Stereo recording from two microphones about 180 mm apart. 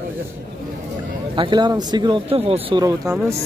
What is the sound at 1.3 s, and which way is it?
Speech, 25° right (ahead or behind).